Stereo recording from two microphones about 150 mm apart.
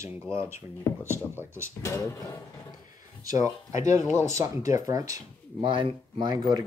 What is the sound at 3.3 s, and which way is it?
Speech, 25° right (ahead or behind).